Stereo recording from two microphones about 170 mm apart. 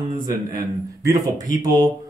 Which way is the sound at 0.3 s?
25° right (ahead or behind).